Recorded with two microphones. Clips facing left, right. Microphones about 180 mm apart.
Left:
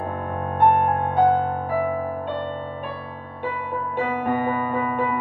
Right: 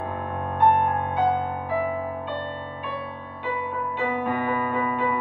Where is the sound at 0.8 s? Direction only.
55° left (ahead or behind).